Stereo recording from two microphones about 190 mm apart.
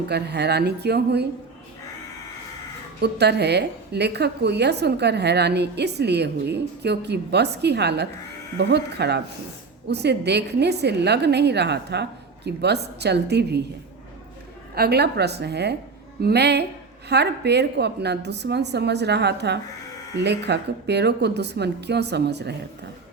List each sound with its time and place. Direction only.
0.1 s a woman's voice: 60° right (ahead or behind)
3.0 s a woman's voice: 60° right (ahead or behind)
14.8 s a woman's voice: 60° right (ahead or behind)